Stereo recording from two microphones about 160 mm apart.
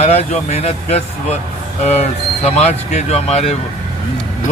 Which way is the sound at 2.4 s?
45° left (ahead or behind).